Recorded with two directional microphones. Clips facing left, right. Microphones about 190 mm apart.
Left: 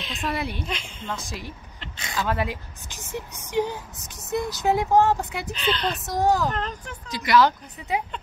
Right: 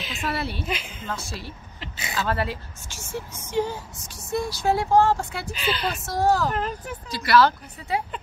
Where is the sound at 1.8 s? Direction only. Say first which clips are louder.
Even; 10° right (ahead or behind).